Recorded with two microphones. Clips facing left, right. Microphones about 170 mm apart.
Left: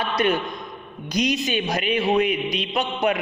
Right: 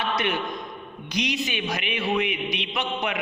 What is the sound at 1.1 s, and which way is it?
A man's voice, 40° left (ahead or behind).